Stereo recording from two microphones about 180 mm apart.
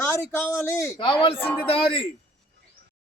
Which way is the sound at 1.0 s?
30° left (ahead or behind).